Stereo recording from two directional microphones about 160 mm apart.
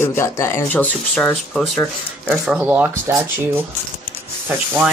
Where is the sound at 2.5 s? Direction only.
10° right (ahead or behind).